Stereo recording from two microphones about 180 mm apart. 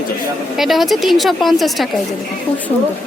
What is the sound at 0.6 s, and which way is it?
A woman's voice, centre (ahead or behind).